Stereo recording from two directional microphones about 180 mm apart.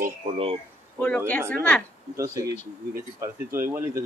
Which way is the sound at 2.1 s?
15° right (ahead or behind).